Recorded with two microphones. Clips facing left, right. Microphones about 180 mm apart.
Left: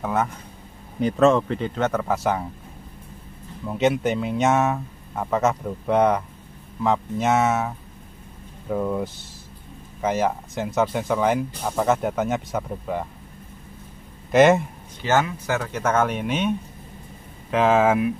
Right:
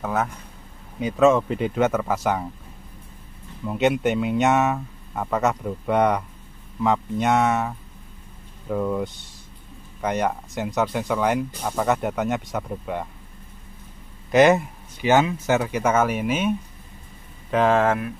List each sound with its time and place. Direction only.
0.0 s speech: centre (ahead or behind)
3.6 s speech: centre (ahead or behind)
14.3 s speech: centre (ahead or behind)
15.0 s speech: 15° right (ahead or behind); by 18.1 s 10° left (ahead or behind)